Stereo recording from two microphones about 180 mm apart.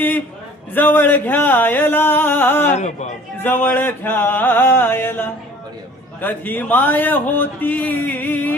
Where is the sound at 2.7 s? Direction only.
40° left (ahead or behind).